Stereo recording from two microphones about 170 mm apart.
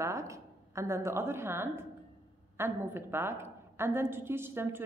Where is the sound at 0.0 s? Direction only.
15° right (ahead or behind).